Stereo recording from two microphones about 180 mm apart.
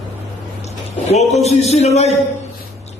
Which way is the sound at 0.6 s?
35° left (ahead or behind).